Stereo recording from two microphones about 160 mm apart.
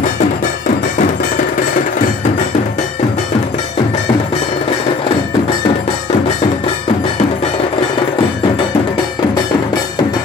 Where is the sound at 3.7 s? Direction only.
40° left (ahead or behind).